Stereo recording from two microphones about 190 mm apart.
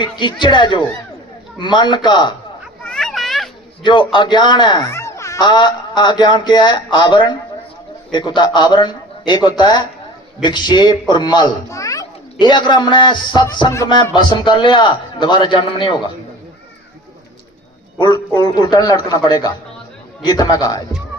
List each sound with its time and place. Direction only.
0.0 s a child's voice: 25° left (ahead or behind)
2.8 s a sound: 5° left (ahead or behind)
3.8 s a child's voice: 25° left (ahead or behind)
17.9 s a man's voice: 25° left (ahead or behind)